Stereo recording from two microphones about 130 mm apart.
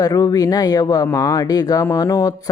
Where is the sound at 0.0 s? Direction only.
30° left (ahead or behind).